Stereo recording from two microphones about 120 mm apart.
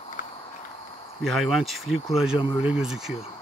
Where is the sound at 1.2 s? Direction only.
Centre (ahead or behind).